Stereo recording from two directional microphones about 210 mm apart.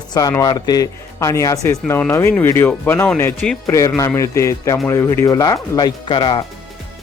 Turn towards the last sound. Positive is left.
turn(degrees=25)  # may be behind; listen again after turning